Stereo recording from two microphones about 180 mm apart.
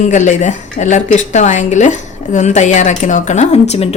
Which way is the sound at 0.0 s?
40° left (ahead or behind).